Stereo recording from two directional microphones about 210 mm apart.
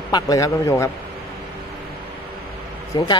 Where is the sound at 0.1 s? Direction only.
15° left (ahead or behind).